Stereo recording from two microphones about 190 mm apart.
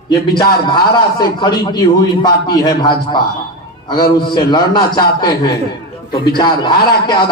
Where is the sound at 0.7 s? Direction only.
25° left (ahead or behind).